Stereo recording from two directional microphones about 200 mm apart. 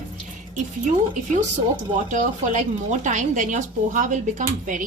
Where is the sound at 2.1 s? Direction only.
40° right (ahead or behind).